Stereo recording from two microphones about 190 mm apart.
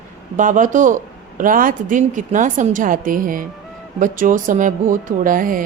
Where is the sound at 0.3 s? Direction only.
45° right (ahead or behind).